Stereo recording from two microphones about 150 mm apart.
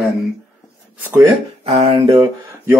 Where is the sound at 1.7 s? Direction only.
40° right (ahead or behind).